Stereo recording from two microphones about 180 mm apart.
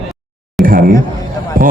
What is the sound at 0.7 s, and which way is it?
Speech, 50° right (ahead or behind).